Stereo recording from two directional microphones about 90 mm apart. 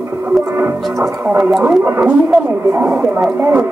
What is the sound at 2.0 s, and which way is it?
Speech, 15° right (ahead or behind).